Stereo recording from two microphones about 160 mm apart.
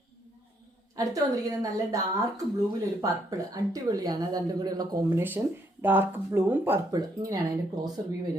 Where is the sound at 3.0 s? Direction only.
20° right (ahead or behind).